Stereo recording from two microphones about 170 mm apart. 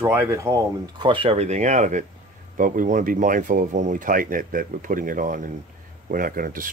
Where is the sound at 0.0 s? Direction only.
15° right (ahead or behind).